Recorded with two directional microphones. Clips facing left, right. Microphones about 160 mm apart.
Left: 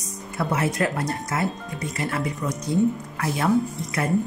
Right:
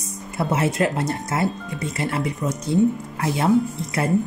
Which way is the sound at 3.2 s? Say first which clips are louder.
Right 3 dB; 25° right (ahead or behind).